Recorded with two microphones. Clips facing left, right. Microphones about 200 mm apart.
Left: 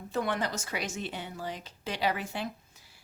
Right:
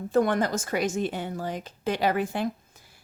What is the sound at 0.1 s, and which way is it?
Speech, 45° right (ahead or behind).